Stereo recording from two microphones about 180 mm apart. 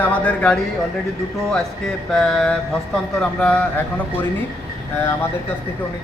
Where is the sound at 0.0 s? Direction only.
10° left (ahead or behind).